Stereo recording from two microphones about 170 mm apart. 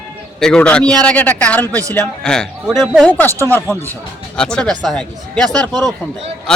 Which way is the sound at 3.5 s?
10° left (ahead or behind).